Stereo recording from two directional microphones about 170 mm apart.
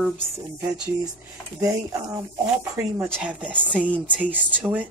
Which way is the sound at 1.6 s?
20° right (ahead or behind).